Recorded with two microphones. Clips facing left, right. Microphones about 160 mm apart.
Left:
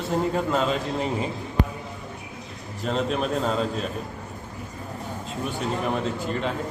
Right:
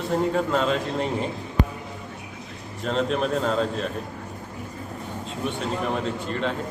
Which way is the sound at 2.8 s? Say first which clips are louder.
Right 1 dB; centre (ahead or behind).